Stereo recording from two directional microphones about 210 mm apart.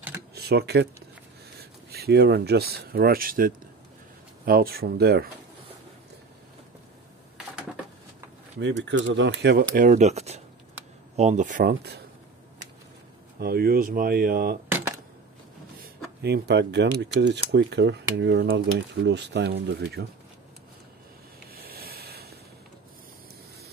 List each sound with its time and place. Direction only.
0.3 s speech: 50° right (ahead or behind)
1.9 s speech: 50° right (ahead or behind)
8.5 s speech: 60° right (ahead or behind)
9.8 s speech: 35° right (ahead or behind)
13.4 s speech: 45° right (ahead or behind)
16.2 s speech: 50° right (ahead or behind)
21.5 s a sound: 45° right (ahead or behind)